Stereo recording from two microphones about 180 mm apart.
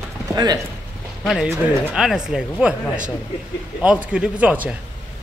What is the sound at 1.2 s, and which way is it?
Speech, centre (ahead or behind).